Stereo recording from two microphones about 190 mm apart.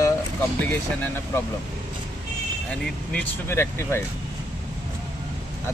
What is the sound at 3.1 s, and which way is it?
Speech, 10° left (ahead or behind).